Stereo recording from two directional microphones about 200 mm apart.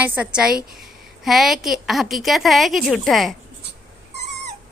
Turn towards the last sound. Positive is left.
turn(degrees=0)  # may be behind; listen again after turning